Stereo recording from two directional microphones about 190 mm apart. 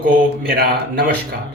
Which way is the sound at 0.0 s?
50° right (ahead or behind).